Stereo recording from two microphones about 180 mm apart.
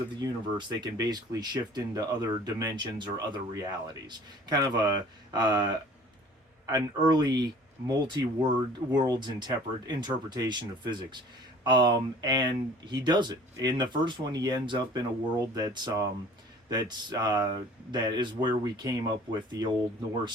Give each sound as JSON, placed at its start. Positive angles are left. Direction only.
{"t": 0.2, "sound": "speech", "side_deg": -25}
{"t": 6.7, "sound": "speech", "side_deg": -20}